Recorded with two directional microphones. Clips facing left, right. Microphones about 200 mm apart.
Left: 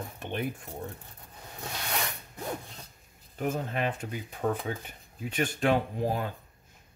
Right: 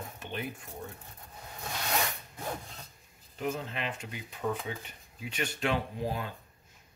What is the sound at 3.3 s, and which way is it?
Speech, 50° left (ahead or behind).